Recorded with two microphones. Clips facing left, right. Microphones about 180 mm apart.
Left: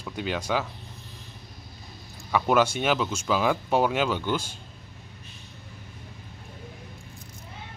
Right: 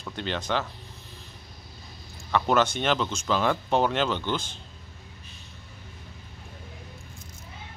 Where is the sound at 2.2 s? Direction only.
5° left (ahead or behind).